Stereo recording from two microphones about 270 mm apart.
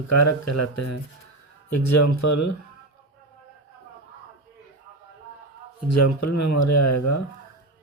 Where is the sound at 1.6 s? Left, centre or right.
Left.